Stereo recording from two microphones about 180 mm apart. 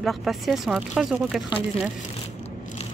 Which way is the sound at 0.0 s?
Centre (ahead or behind).